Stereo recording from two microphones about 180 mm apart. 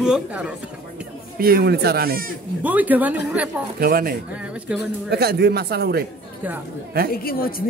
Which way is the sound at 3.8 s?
55° right (ahead or behind).